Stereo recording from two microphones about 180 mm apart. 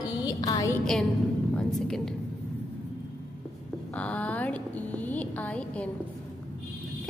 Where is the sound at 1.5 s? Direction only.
5° left (ahead or behind).